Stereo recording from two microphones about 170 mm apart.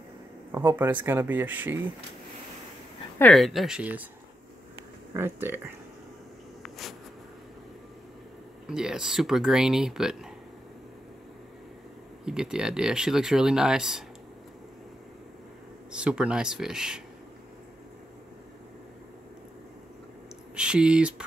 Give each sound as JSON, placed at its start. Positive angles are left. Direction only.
{"t": 0.5, "sound": "speech", "side_deg": -15}
{"t": 3.2, "sound": "speech", "side_deg": 5}
{"t": 5.1, "sound": "speech", "side_deg": -15}
{"t": 6.6, "sound": "a sound", "side_deg": 0}
{"t": 8.6, "sound": "speech", "side_deg": -5}
{"t": 12.3, "sound": "speech", "side_deg": -5}
{"t": 15.9, "sound": "speech", "side_deg": -5}
{"t": 20.5, "sound": "speech", "side_deg": -5}